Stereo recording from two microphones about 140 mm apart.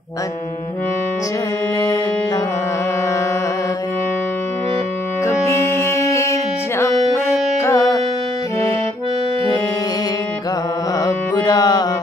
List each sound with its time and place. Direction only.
5.2 s music: 20° left (ahead or behind)
11.0 s carnatic music: 30° left (ahead or behind)